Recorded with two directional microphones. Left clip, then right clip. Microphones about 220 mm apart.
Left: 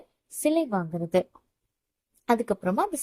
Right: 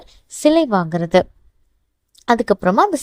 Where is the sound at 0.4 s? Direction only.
30° right (ahead or behind).